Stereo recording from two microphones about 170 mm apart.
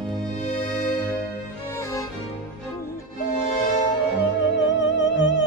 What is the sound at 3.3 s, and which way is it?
Music, 40° left (ahead or behind).